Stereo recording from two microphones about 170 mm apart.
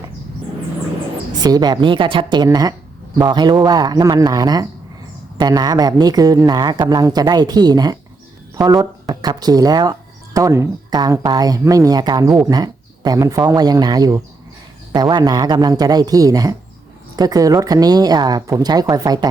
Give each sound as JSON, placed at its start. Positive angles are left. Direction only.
{"t": 1.4, "sound": "a woman's voice", "side_deg": -25}